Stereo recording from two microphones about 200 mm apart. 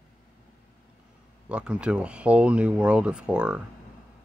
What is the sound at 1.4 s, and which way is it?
Speech, 5° right (ahead or behind).